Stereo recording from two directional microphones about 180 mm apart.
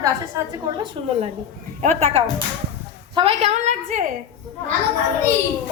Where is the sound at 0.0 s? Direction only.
20° right (ahead or behind).